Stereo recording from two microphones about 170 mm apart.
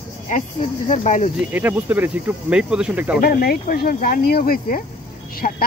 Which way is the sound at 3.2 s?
65° left (ahead or behind).